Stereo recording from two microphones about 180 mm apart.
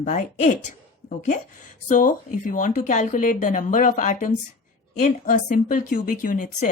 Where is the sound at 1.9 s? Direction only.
45° left (ahead or behind).